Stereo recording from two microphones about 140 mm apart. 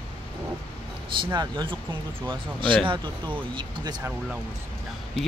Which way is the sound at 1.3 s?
35° right (ahead or behind).